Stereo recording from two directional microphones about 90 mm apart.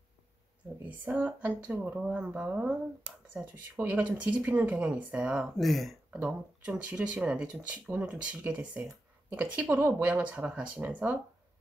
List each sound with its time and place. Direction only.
1.1 s speech: 20° right (ahead or behind)
1.7 s speech: 10° right (ahead or behind)
5.6 s speech: centre (ahead or behind)
6.0 s speech: 10° right (ahead or behind)